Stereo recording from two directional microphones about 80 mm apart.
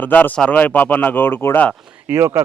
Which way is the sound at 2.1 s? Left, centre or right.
Right.